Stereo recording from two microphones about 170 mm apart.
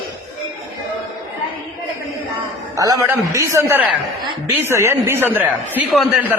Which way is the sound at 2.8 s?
20° right (ahead or behind).